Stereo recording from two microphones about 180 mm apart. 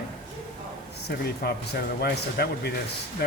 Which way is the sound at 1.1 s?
65° left (ahead or behind).